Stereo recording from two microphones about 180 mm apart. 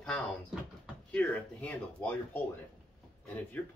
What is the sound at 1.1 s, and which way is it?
Speech, 5° left (ahead or behind).